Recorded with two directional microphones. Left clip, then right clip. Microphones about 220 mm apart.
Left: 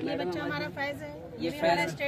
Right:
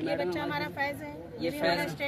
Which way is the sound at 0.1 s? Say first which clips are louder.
Right 1 dB; 15° right (ahead or behind).